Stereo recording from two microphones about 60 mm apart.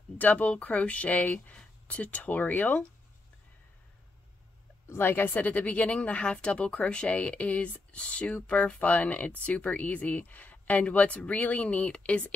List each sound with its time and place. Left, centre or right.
0.2 s a woman's voice: left
4.8 s a woman's voice: left